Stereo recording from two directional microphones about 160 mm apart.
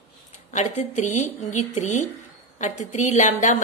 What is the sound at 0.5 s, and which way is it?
A woman's voice, 50° left (ahead or behind).